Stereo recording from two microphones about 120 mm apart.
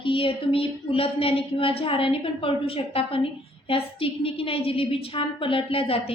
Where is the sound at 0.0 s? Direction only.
45° left (ahead or behind).